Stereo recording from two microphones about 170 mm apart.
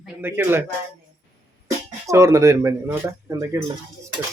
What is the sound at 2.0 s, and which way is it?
Speech, 15° right (ahead or behind).